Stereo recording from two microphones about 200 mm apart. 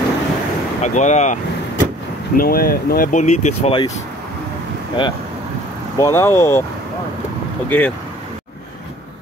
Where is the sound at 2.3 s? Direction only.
45° left (ahead or behind).